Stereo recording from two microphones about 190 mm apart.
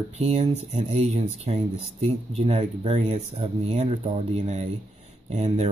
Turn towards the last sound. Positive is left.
turn(degrees=-35)  # may be behind; listen again after turning